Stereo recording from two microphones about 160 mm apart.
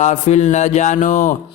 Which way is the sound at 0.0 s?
45° left (ahead or behind).